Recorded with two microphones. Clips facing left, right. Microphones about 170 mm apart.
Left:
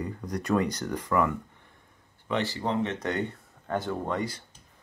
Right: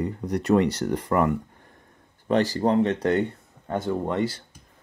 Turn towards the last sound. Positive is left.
turn(degrees=-20)  # may be behind; listen again after turning